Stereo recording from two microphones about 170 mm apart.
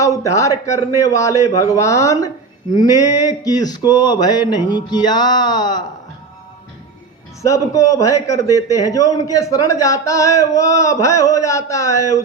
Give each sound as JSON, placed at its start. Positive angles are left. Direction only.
{"t": 0.0, "sound": "speech", "side_deg": 20}
{"t": 7.4, "sound": "speech", "side_deg": 20}